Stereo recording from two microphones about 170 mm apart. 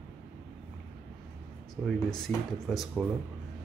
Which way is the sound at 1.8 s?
5° left (ahead or behind).